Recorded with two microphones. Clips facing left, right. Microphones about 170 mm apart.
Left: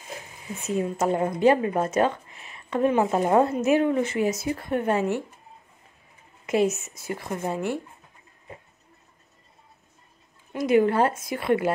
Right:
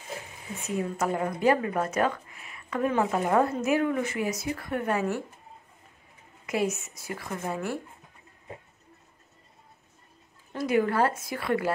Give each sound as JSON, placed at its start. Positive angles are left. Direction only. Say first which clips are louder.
{"t": 0.7, "sound": "a woman's voice", "louder": "left 4 dB", "side_deg": 20}
{"t": 6.4, "sound": "a woman's voice", "louder": "left 5 dB", "side_deg": 25}
{"t": 10.5, "sound": "a woman's voice", "louder": "left 5 dB", "side_deg": 20}